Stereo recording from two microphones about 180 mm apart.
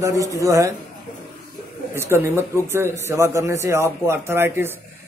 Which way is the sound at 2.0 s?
15° right (ahead or behind).